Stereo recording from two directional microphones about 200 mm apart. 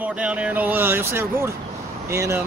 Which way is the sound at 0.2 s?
5° right (ahead or behind).